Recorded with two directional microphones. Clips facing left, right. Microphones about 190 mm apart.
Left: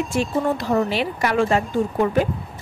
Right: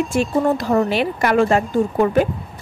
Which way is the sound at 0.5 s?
50° right (ahead or behind).